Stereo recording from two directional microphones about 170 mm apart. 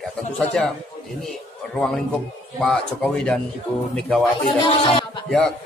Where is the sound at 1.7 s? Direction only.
5° left (ahead or behind).